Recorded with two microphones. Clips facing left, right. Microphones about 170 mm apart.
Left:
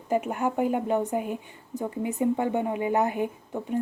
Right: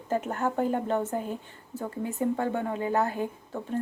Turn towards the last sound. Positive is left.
turn(degrees=15)  # may be behind; listen again after turning